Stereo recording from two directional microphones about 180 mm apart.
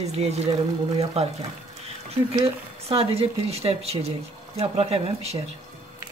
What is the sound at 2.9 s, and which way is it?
Speech, 30° right (ahead or behind).